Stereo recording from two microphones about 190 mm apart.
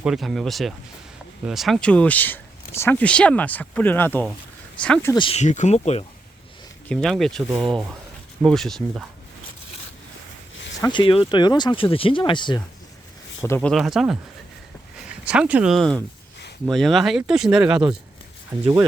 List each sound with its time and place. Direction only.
0.0 s speech: centre (ahead or behind)
5.1 s speech: 30° left (ahead or behind)
6.8 s speech: 5° left (ahead or behind)
10.9 s speech: 25° left (ahead or behind)
13.4 s speech: 10° left (ahead or behind)
15.2 s speech: 5° right (ahead or behind)